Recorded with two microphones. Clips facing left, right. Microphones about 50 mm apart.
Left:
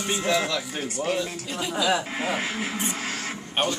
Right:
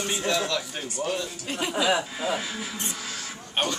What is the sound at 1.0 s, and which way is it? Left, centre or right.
Speech, centre.